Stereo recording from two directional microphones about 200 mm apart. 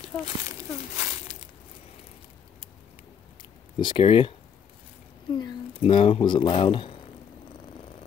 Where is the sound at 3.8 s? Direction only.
25° left (ahead or behind).